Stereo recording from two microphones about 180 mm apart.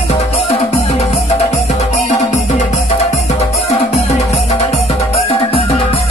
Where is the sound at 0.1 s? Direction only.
35° left (ahead or behind).